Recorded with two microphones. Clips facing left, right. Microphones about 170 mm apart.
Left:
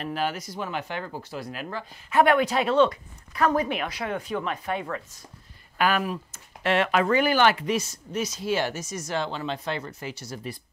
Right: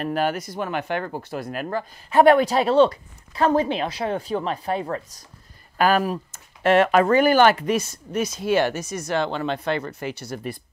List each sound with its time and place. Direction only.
0.0 s speech: 50° right (ahead or behind)
2.0 s speech: 35° right (ahead or behind); by 10.6 s 60° right (ahead or behind)